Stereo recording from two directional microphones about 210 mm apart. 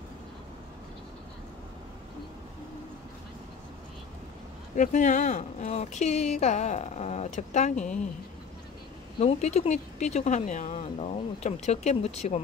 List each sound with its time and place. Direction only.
4.7 s speech: 35° left (ahead or behind)
7.7 s a woman's voice: 5° left (ahead or behind)
9.2 s speech: 30° left (ahead or behind)